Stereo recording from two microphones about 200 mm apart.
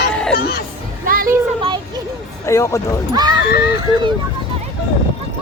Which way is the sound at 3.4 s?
50° left (ahead or behind).